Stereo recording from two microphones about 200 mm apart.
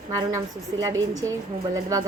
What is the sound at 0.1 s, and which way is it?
A woman's voice, 15° right (ahead or behind).